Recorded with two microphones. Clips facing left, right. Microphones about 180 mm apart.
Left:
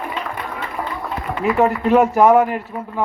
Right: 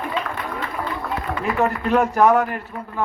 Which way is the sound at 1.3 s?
10° left (ahead or behind).